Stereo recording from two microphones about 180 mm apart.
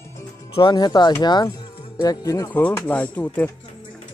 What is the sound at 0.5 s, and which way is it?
Speech, 25° left (ahead or behind).